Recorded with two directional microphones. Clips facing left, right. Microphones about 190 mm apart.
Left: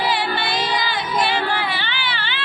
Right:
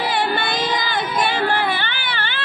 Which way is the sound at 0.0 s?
50° right (ahead or behind).